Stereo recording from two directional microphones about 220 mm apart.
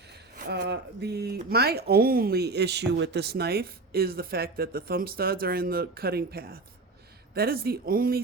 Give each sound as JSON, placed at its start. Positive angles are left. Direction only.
{"t": 0.1, "sound": "speech", "side_deg": -50}